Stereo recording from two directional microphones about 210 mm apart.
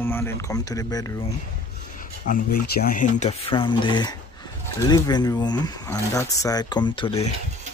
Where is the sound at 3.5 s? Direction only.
25° left (ahead or behind).